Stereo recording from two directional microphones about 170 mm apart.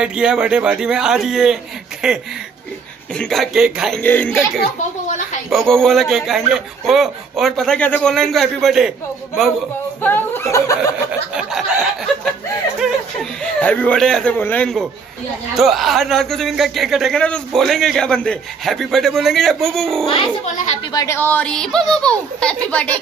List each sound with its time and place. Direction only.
0.0 s a man's voice: 5° right (ahead or behind)
3.2 s a man's voice: centre (ahead or behind)
4.0 s speech: 10° left (ahead or behind)
5.0 s a sound: 45° left (ahead or behind)
5.5 s a man's voice: centre (ahead or behind)
10.0 s chuckle: 10° left (ahead or behind)
11.1 s chuckle: 5° right (ahead or behind)
12.8 s a man's voice: 5° left (ahead or behind)
20.9 s speech: 20° left (ahead or behind)